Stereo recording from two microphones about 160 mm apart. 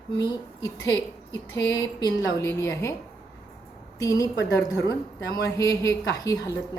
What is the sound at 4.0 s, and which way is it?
A woman's voice, 20° left (ahead or behind).